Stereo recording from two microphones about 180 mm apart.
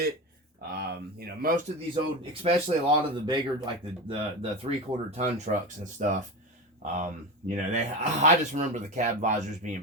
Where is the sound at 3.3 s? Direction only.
30° right (ahead or behind).